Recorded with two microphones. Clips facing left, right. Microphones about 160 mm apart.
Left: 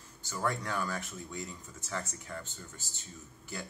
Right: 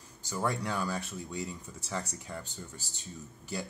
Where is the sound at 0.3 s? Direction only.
15° right (ahead or behind).